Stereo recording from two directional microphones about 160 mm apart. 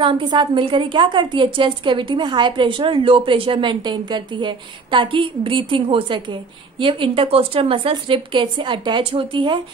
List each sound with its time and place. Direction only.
0.0 s a woman's voice: 30° right (ahead or behind)